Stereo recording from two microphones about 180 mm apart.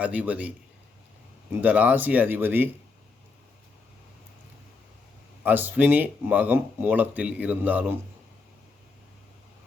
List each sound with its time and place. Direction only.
0.0 s speech: 10° right (ahead or behind)
1.6 s speech: 10° right (ahead or behind)
5.4 s speech: 10° right (ahead or behind)